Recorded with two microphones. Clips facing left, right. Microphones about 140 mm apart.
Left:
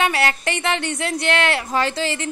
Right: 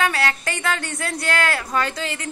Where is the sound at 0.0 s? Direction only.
25° left (ahead or behind).